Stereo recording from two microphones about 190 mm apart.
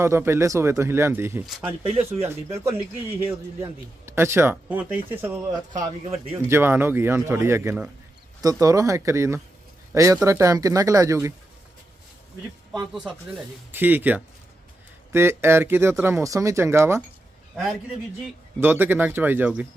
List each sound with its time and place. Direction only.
0.0 s speech: 15° right (ahead or behind)
1.6 s speech: 30° right (ahead or behind)
2.2 s a man's voice: 15° right (ahead or behind)
12.9 s speech: centre (ahead or behind)
18.6 s speech: 10° right (ahead or behind)